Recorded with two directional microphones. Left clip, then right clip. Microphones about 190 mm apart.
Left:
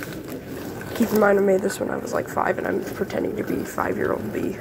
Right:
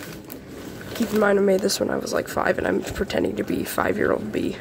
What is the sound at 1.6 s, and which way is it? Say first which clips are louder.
Speech: right 2 dB; 30° right (ahead or behind).